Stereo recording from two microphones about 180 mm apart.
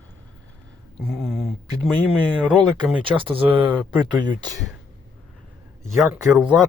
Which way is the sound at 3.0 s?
30° right (ahead or behind).